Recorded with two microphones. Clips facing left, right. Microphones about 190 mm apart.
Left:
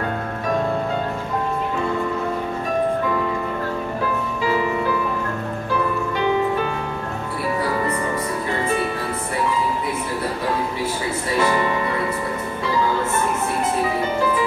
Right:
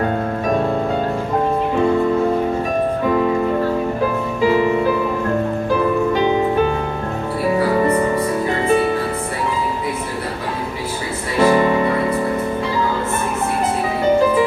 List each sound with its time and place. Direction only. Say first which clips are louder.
4.4 s music: right 7 dB; 40° right (ahead or behind)
11.4 s music: right 9 dB; 30° right (ahead or behind)